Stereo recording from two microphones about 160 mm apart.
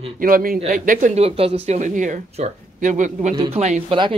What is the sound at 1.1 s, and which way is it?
Speech, 35° right (ahead or behind).